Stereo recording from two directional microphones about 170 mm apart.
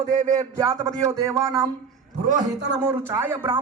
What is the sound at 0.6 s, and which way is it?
Speech, 20° right (ahead or behind).